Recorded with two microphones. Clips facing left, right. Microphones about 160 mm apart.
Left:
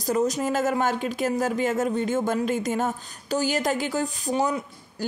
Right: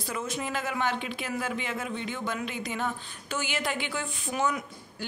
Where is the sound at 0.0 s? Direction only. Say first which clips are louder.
Left 10 dB; 40° left (ahead or behind).